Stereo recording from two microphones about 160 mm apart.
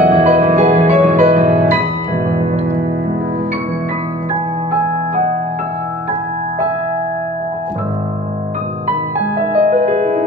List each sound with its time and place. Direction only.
0.0 s music: 45° right (ahead or behind)
9.7 s music: 45° right (ahead or behind)